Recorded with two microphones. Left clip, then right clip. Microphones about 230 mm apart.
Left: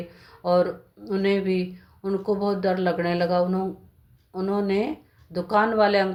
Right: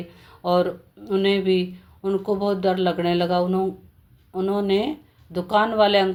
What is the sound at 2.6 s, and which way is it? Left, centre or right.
Speech, right.